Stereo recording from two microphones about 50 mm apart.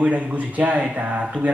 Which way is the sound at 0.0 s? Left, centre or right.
Right.